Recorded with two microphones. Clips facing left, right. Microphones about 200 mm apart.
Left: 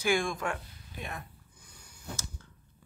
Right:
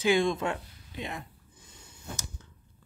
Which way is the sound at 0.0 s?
20° right (ahead or behind).